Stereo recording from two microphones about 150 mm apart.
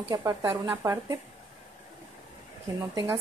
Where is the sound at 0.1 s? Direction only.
20° right (ahead or behind).